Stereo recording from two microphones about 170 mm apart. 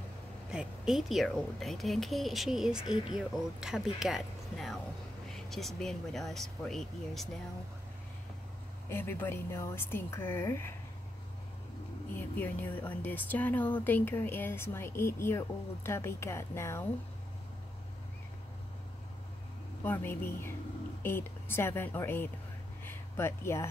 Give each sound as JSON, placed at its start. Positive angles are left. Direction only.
{"t": 0.5, "sound": "a woman's voice", "side_deg": -5}
{"t": 8.8, "sound": "speech", "side_deg": 15}
{"t": 12.2, "sound": "speech", "side_deg": 10}
{"t": 19.8, "sound": "speech", "side_deg": 10}